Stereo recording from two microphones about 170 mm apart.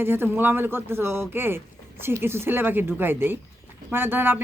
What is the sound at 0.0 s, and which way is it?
Speech, 15° right (ahead or behind).